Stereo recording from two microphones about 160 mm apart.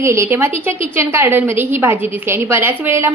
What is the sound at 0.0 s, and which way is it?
A woman's voice, 15° right (ahead or behind).